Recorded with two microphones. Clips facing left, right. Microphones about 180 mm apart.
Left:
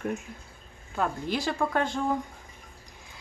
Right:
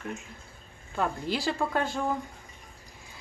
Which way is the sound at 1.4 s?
5° right (ahead or behind).